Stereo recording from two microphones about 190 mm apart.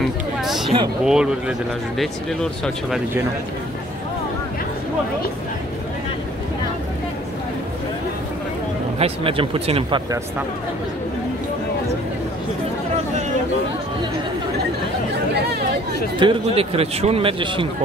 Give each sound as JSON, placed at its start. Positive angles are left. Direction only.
{"t": 0.0, "sound": "chatter", "side_deg": 0}
{"t": 1.0, "sound": "speech", "side_deg": -5}
{"t": 8.9, "sound": "speech", "side_deg": -30}
{"t": 15.3, "sound": "chatter", "side_deg": -60}
{"t": 16.2, "sound": "speech", "side_deg": -30}